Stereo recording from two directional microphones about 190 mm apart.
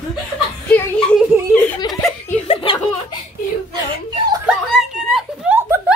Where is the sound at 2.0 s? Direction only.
5° left (ahead or behind).